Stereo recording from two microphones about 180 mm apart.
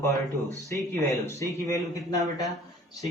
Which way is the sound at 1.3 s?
15° left (ahead or behind).